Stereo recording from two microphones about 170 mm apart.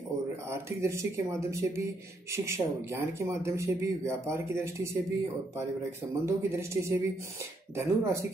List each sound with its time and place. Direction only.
0.7 s speech: 15° right (ahead or behind)
6.2 s speech: 15° right (ahead or behind)